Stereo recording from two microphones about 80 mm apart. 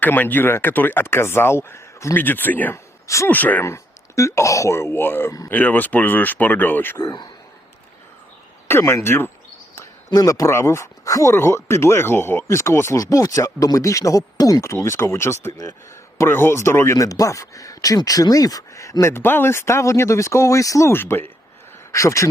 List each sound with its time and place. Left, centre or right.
0.0 s speech: left
2.1 s speech: left
2.7 s a sound: left
3.2 s speech: left
3.6 s speech: left
7.0 s speech: left
8.6 s speech: left
10.1 s speech: left
10.5 s speech: left
14.6 s speech: left
20.9 s speech: left
21.9 s speech: left